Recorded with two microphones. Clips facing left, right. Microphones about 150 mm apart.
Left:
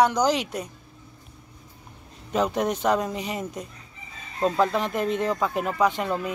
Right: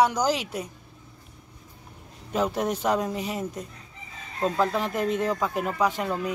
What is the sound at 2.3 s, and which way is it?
Speech, 5° right (ahead or behind).